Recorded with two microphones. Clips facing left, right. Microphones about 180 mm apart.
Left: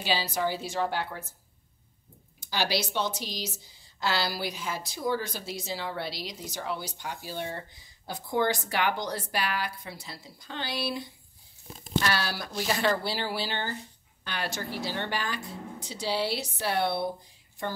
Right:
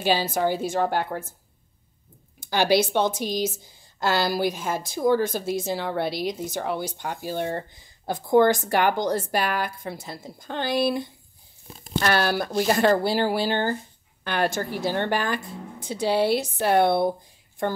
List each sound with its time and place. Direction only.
0.0 s speech: 50° right (ahead or behind)
2.4 s speech: 55° right (ahead or behind)